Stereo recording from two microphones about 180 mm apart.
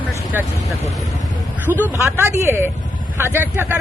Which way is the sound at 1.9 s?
15° right (ahead or behind).